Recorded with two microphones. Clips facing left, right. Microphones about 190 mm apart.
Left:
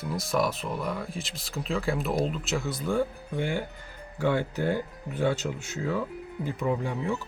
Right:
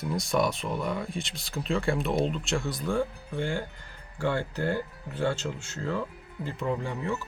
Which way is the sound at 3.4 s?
15° left (ahead or behind).